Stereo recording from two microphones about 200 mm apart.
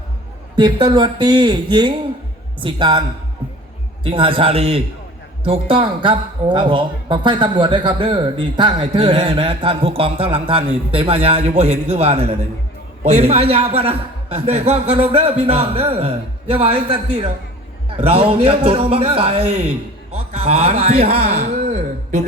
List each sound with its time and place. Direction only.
0.5 s speech: 20° right (ahead or behind)
4.0 s a man's voice: 25° right (ahead or behind)
20.9 s a sound: 30° right (ahead or behind)